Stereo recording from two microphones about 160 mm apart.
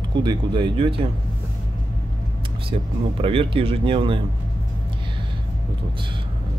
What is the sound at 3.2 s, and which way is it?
Speech, 35° right (ahead or behind).